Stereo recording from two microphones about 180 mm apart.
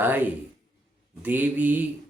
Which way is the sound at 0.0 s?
10° right (ahead or behind).